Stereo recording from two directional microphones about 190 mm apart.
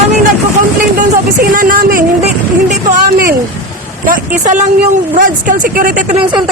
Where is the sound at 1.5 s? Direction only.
45° right (ahead or behind).